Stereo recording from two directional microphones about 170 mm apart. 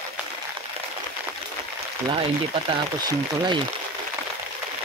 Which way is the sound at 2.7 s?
30° right (ahead or behind).